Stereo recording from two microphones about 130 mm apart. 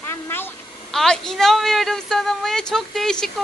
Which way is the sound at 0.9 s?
5° left (ahead or behind).